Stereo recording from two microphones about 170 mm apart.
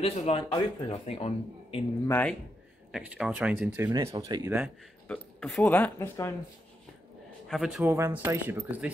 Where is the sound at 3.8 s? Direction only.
20° right (ahead or behind).